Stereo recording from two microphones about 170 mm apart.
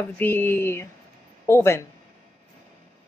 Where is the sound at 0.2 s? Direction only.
10° left (ahead or behind).